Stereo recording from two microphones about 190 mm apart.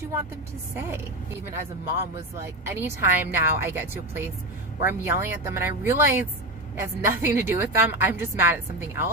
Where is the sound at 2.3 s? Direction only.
15° right (ahead or behind).